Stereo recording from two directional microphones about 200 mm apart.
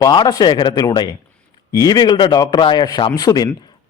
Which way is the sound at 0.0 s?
20° left (ahead or behind).